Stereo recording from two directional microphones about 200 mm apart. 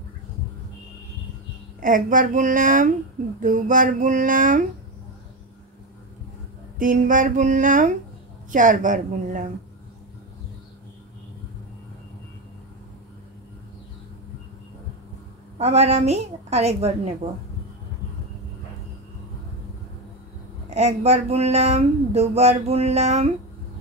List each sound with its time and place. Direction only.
1.8 s speech: 40° right (ahead or behind)
6.8 s speech: 40° right (ahead or behind)
15.5 s speech: 30° right (ahead or behind)
20.7 s speech: 35° right (ahead or behind)